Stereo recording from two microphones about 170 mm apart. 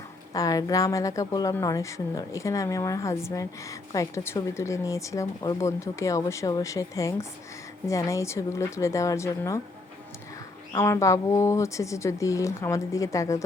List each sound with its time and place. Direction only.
0.3 s a woman's voice: 20° left (ahead or behind)
10.7 s speech: 15° left (ahead or behind)